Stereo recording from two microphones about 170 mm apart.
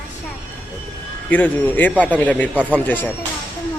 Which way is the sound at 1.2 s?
10° left (ahead or behind).